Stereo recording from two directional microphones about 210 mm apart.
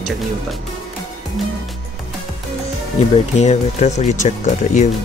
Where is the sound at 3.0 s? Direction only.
30° left (ahead or behind).